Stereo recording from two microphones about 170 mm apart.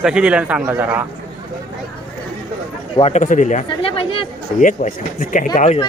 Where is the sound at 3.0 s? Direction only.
40° left (ahead or behind).